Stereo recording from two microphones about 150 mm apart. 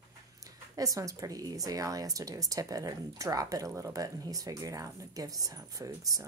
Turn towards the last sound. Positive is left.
turn(degrees=-25)  # may be behind; listen again after turning